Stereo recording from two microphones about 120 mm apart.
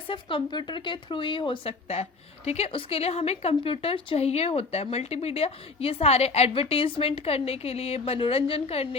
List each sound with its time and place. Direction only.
0.1 s speech: 45° left (ahead or behind)